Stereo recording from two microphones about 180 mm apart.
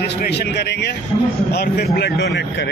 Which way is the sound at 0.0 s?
70° left (ahead or behind).